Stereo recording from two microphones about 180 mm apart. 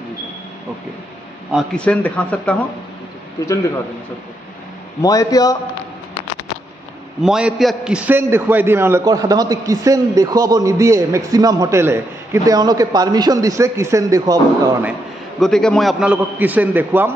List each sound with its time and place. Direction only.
1.5 s speech: centre (ahead or behind)
5.0 s a man's voice: 20° left (ahead or behind)
7.2 s a man's voice: 5° right (ahead or behind); by 14.9 s 20° right (ahead or behind)
15.4 s a man's voice: 5° left (ahead or behind)